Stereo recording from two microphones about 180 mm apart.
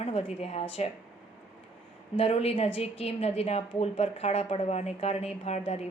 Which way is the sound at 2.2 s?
35° left (ahead or behind).